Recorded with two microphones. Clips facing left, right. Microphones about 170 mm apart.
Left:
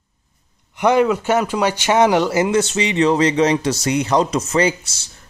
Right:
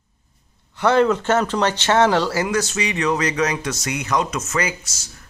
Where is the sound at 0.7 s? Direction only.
15° left (ahead or behind).